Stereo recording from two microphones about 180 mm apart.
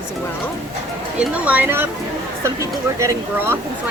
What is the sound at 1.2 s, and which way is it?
Speech, 10° right (ahead or behind).